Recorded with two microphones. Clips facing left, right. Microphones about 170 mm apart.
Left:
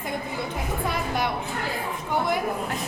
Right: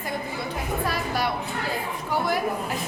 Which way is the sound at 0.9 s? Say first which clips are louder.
Left 1 dB; 20° left (ahead or behind).